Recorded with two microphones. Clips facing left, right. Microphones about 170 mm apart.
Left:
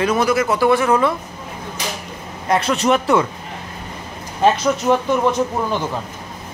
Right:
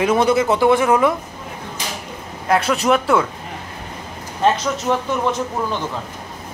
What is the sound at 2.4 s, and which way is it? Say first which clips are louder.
Speech: even; 5° right (ahead or behind).